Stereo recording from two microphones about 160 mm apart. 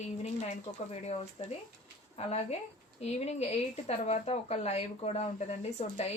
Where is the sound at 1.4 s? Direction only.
40° left (ahead or behind).